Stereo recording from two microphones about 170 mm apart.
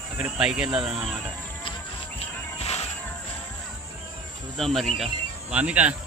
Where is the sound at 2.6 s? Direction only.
40° left (ahead or behind).